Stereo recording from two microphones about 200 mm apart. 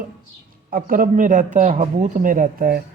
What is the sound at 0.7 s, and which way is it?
Speech, 45° right (ahead or behind).